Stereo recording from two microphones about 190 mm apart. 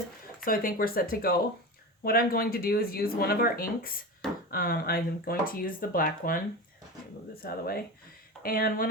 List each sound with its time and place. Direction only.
0.4 s speech: 50° left (ahead or behind)
7.4 s speech: 55° left (ahead or behind)